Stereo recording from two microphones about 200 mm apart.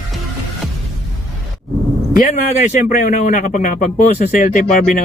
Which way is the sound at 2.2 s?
35° left (ahead or behind).